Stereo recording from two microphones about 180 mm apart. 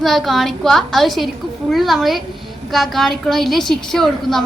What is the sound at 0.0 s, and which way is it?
A woman's voice, centre (ahead or behind).